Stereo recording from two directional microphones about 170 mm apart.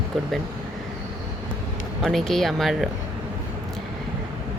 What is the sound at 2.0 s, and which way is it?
Speech, centre (ahead or behind).